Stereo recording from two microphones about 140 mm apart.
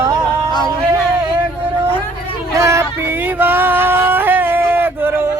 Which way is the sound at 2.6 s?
20° right (ahead or behind).